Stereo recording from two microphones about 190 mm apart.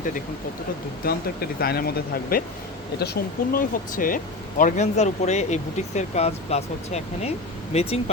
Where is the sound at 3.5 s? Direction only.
45° left (ahead or behind).